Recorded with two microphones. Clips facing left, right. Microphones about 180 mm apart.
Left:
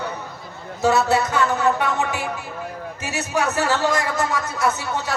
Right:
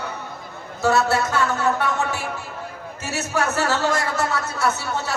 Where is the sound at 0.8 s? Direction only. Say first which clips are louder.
Left 1 dB; 15° left (ahead or behind).